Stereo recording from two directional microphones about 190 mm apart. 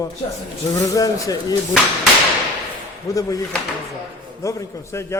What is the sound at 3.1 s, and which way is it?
Speech, 15° left (ahead or behind).